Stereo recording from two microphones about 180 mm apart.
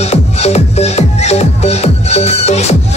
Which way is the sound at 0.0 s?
35° left (ahead or behind).